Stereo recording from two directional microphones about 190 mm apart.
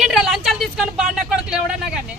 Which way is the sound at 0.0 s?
Centre (ahead or behind).